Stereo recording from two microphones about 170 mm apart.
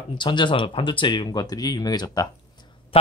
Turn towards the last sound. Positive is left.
turn(degrees=35)  # may be behind; listen again after turning